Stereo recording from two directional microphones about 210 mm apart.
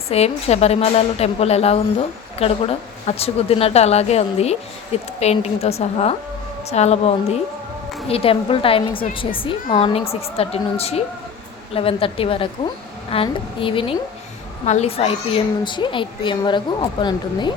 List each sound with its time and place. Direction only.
0.1 s a child's voice: 30° left (ahead or behind)